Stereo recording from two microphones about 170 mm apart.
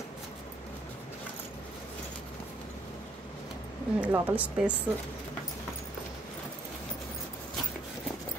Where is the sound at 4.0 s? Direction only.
10° right (ahead or behind).